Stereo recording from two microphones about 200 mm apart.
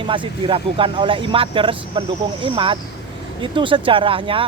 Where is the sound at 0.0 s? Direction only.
25° right (ahead or behind).